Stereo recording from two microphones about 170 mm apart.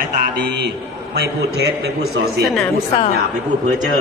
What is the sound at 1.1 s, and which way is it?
Speech, 75° right (ahead or behind).